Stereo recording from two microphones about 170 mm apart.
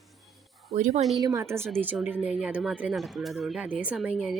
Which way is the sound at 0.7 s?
45° right (ahead or behind).